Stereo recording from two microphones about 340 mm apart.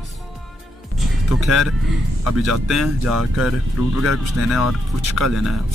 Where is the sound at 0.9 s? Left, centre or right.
Centre.